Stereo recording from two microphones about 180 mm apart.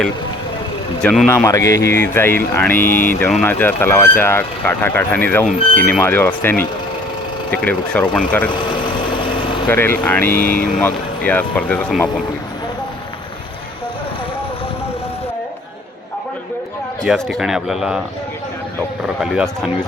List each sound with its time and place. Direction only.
1.0 s speech: centre (ahead or behind)
1.5 s speech: 15° left (ahead or behind)
9.2 s vehicle: 30° left (ahead or behind)
9.6 s speech: 10° left (ahead or behind)
10.3 s speech: 50° left (ahead or behind)
10.8 s speech: 10° left (ahead or behind)
17.0 s speech: centre (ahead or behind)
19.2 s speech: centre (ahead or behind)